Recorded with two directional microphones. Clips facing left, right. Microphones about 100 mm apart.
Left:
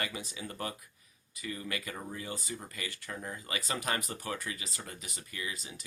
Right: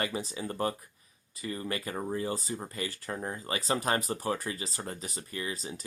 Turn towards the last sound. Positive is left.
turn(degrees=-35)  # may be behind; listen again after turning